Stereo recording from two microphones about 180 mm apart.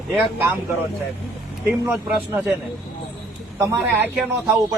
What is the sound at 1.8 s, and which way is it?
Speech, 5° right (ahead or behind).